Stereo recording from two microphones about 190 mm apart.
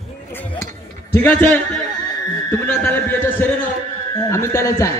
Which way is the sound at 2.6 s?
10° left (ahead or behind).